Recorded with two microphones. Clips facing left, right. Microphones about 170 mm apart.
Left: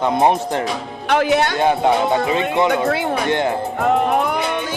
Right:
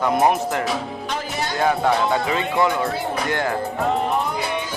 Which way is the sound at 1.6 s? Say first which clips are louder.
Left 3 dB; 25° left (ahead or behind).